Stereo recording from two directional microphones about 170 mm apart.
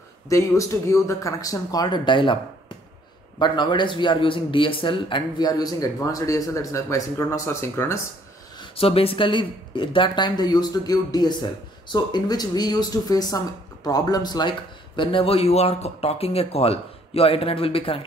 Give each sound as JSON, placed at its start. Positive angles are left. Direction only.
{"t": 0.3, "sound": "speech", "side_deg": 20}
{"t": 3.3, "sound": "speech", "side_deg": 25}
{"t": 8.5, "sound": "speech", "side_deg": 35}